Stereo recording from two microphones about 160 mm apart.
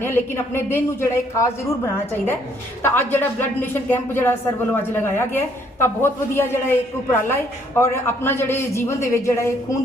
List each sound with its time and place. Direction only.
0.0 s speech: 15° left (ahead or behind)